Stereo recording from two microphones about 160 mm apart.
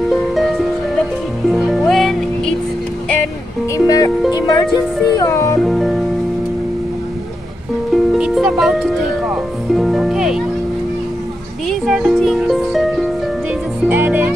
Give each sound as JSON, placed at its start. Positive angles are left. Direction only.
{"t": 0.1, "sound": "music", "side_deg": 0}
{"t": 3.7, "sound": "music", "side_deg": 20}
{"t": 5.6, "sound": "music", "side_deg": 0}
{"t": 7.9, "sound": "music", "side_deg": 0}
{"t": 11.6, "sound": "music", "side_deg": 0}